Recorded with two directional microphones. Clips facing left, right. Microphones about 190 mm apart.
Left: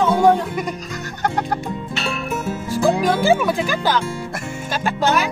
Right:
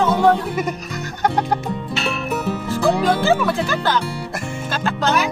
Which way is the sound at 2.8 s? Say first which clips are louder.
Left 1 dB; 15° left (ahead or behind).